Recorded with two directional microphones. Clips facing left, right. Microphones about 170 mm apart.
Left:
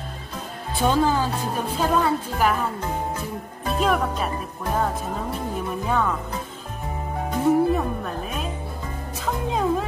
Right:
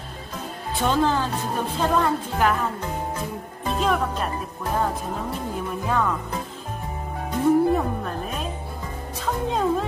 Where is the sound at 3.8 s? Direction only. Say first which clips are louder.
Left 1 dB; centre (ahead or behind).